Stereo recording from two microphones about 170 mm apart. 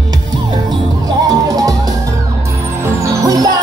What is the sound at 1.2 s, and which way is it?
Music, 20° right (ahead or behind).